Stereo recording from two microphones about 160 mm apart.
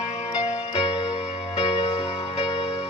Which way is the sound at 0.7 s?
35° left (ahead or behind).